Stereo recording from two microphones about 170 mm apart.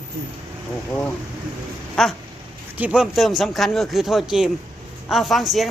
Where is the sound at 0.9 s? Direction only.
10° left (ahead or behind).